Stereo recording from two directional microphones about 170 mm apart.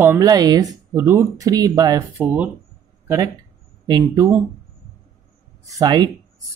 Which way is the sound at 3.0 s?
15° right (ahead or behind).